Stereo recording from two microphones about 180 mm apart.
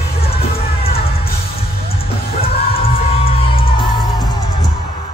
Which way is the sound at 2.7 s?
30° left (ahead or behind).